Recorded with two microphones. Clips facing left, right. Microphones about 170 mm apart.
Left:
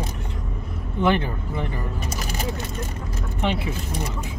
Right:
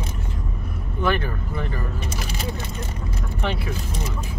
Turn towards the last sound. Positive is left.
turn(degrees=20)  # may be behind; listen again after turning